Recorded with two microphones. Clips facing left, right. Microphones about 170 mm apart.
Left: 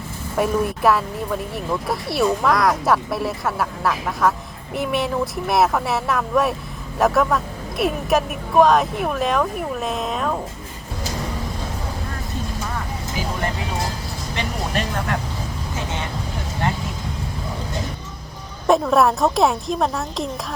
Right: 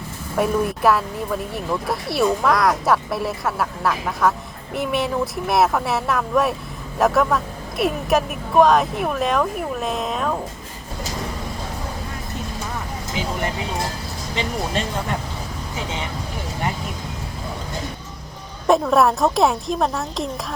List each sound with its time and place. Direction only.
0.3 s speech: centre (ahead or behind)
14.3 s speech: 20° right (ahead or behind)
18.7 s speech: centre (ahead or behind)